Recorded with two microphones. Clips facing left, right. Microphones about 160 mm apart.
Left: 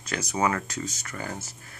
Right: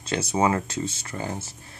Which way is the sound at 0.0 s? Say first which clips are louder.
Right 4 dB; 30° right (ahead or behind).